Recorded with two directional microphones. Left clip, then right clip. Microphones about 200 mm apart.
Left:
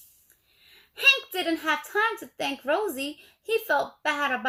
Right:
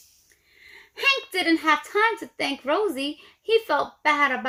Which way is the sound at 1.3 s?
25° right (ahead or behind).